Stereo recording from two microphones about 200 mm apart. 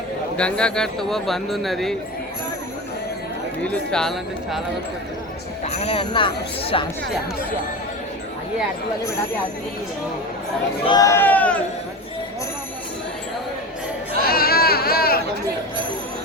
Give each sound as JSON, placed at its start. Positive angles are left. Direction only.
{"t": 0.3, "sound": "speech", "side_deg": 5}
{"t": 3.6, "sound": "speech", "side_deg": 5}
{"t": 5.6, "sound": "speech", "side_deg": 30}
{"t": 10.8, "sound": "speech", "side_deg": 20}
{"t": 14.3, "sound": "a sound", "side_deg": 50}